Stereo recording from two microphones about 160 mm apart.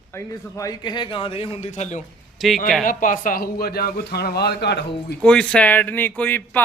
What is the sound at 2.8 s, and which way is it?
A man's voice, 55° left (ahead or behind).